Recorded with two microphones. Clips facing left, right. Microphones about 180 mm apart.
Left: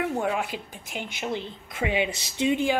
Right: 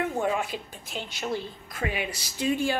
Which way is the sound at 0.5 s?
15° left (ahead or behind).